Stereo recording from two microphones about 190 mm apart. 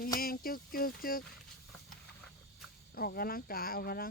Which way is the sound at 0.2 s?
50° left (ahead or behind).